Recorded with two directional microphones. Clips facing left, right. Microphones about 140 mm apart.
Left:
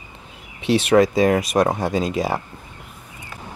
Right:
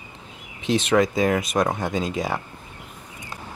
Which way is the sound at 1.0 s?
25° left (ahead or behind).